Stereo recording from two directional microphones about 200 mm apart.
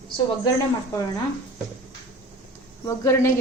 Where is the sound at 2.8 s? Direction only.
15° left (ahead or behind).